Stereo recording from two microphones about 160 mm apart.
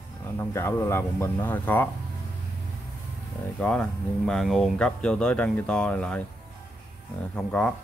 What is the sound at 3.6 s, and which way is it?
A man's voice, 5° left (ahead or behind).